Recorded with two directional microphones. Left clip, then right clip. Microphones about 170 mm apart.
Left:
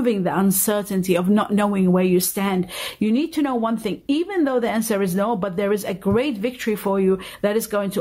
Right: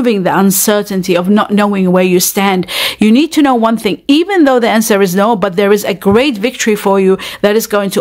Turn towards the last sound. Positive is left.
turn(degrees=-35)  # may be behind; listen again after turning